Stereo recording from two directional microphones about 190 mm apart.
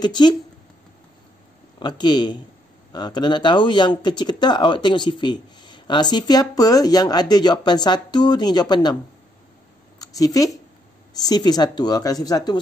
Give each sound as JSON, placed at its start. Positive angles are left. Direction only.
{"t": 0.0, "sound": "speech", "side_deg": 25}
{"t": 1.8, "sound": "speech", "side_deg": 25}
{"t": 9.9, "sound": "a woman's voice", "side_deg": 20}